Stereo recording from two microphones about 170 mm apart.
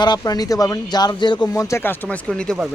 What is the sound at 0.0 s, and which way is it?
Speech, 25° left (ahead or behind).